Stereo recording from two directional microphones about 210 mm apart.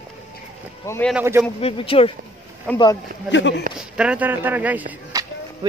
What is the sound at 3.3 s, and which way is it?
Speech, 60° left (ahead or behind).